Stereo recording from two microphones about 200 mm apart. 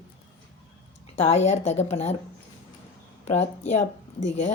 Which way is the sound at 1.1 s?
30° left (ahead or behind).